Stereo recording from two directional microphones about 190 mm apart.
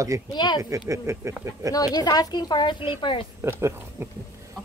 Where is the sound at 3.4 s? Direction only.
15° right (ahead or behind).